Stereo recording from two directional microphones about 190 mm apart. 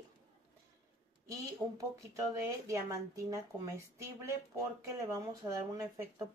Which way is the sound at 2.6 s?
15° right (ahead or behind).